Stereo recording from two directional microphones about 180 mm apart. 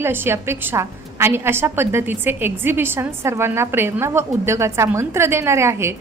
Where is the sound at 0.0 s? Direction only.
15° right (ahead or behind).